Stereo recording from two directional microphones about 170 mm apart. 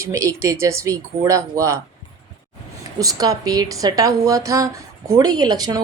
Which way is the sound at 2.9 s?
20° right (ahead or behind).